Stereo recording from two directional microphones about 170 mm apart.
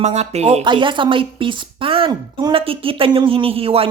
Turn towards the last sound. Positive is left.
turn(degrees=-35)  # may be behind; listen again after turning